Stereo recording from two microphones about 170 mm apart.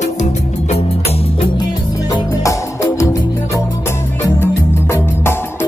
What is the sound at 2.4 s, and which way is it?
Music, 20° left (ahead or behind).